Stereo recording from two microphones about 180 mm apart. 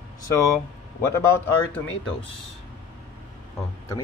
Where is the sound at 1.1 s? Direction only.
15° left (ahead or behind).